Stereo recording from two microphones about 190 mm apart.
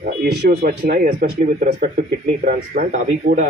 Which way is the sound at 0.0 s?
50° right (ahead or behind).